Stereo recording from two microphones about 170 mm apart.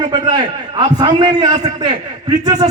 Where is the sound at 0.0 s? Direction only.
25° right (ahead or behind).